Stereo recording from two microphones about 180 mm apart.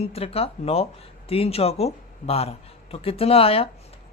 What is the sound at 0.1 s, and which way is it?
Speech, 35° left (ahead or behind).